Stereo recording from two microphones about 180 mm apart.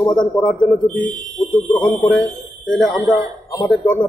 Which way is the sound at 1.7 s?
5° left (ahead or behind).